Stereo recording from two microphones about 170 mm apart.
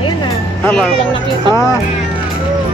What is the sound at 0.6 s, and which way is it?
Speech, 5° left (ahead or behind).